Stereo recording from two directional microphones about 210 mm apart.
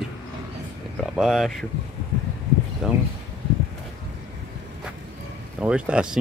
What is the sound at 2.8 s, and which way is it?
Speech, 5° right (ahead or behind).